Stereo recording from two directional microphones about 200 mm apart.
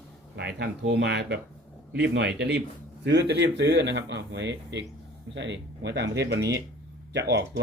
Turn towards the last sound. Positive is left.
turn(degrees=-55)  # may be behind; listen again after turning